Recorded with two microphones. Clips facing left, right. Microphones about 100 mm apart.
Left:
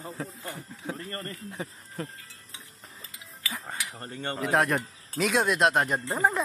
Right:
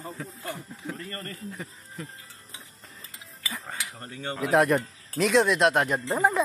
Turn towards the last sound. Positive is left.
turn(degrees=0)  # may be behind; listen again after turning